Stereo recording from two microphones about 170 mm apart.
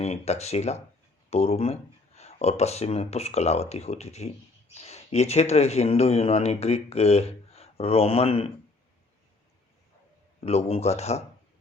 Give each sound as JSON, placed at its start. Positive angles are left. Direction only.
{"t": 0.0, "sound": "speech", "side_deg": 40}
{"t": 10.4, "sound": "speech", "side_deg": 40}